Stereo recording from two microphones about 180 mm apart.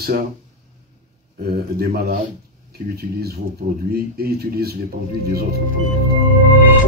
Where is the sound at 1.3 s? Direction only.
55° right (ahead or behind).